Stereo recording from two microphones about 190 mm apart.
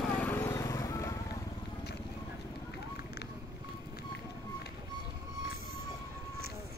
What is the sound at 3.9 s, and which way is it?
Run, 55° left (ahead or behind).